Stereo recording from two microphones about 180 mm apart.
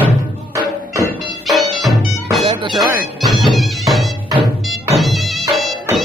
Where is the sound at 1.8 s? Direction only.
Centre (ahead or behind).